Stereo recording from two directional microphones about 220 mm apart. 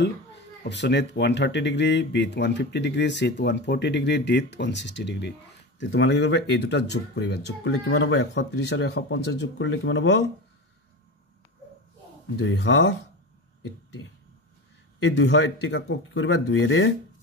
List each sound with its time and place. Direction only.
0.7 s speech: 50° left (ahead or behind)
12.4 s speech: 55° left (ahead or behind)
15.1 s speech: 55° left (ahead or behind)